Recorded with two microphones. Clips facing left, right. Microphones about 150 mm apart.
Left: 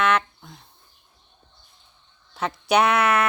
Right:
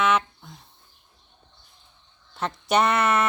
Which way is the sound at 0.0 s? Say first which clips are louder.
Left 1 dB; centre (ahead or behind).